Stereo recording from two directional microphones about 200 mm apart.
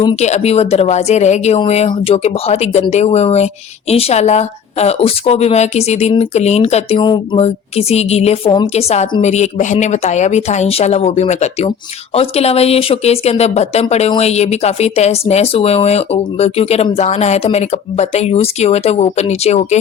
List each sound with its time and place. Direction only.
0.2 s speech: 35° left (ahead or behind)